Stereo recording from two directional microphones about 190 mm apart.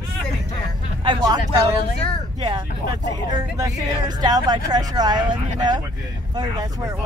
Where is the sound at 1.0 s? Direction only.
25° right (ahead or behind).